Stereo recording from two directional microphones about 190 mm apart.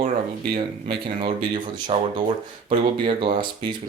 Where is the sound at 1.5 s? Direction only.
25° right (ahead or behind).